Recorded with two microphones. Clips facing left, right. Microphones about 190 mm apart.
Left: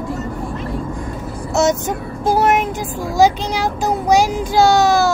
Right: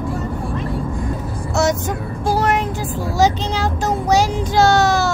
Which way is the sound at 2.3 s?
20° left (ahead or behind).